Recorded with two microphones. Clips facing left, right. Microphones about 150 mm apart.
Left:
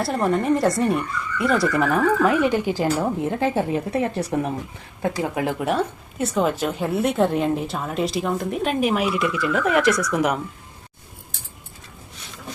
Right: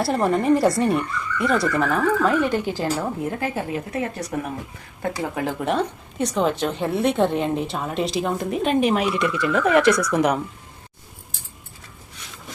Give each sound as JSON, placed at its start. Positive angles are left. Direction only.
{"t": 0.0, "sound": "a woman's voice", "side_deg": 0}
{"t": 5.5, "sound": "a woman's voice", "side_deg": 5}